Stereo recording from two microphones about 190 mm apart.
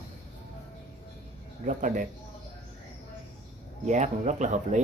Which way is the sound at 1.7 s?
45° right (ahead or behind).